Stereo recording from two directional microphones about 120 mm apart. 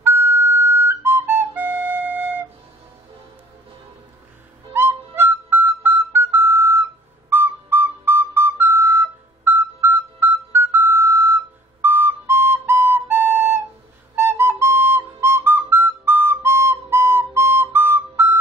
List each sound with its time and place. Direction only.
0.0 s flute: 20° right (ahead or behind)
4.7 s music: 20° right (ahead or behind)
14.1 s flute: 20° right (ahead or behind)